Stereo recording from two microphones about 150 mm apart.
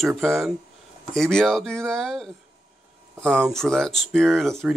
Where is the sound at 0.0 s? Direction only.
Centre (ahead or behind).